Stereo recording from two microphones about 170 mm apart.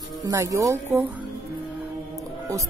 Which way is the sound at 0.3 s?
20° right (ahead or behind).